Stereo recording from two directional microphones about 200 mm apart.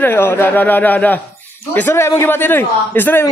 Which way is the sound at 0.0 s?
10° left (ahead or behind).